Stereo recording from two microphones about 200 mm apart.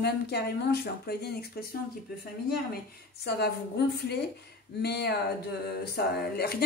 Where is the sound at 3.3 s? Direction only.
55° left (ahead or behind).